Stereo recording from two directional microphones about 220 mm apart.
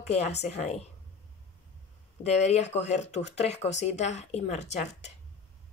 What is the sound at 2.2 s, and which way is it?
A woman's voice, 30° left (ahead or behind).